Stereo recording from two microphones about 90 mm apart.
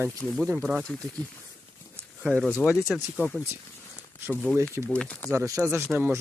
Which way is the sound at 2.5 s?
25° left (ahead or behind).